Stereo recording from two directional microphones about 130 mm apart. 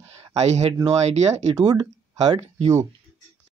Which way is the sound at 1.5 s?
30° right (ahead or behind).